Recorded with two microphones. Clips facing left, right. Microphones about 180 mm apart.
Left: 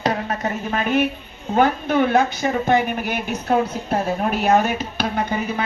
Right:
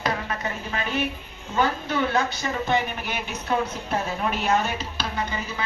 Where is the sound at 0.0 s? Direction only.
45° left (ahead or behind).